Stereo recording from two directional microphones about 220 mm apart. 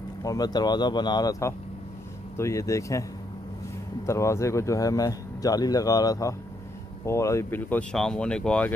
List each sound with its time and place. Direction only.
0.2 s speech: 15° left (ahead or behind)